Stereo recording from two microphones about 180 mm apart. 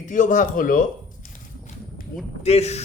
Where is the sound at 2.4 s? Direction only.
35° left (ahead or behind).